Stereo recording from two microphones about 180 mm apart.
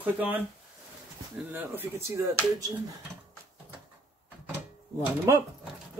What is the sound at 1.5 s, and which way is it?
Speech, 10° right (ahead or behind).